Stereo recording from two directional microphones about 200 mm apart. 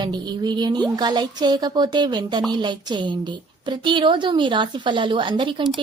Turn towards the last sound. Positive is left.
turn(degrees=-25)  # may be behind; listen again after turning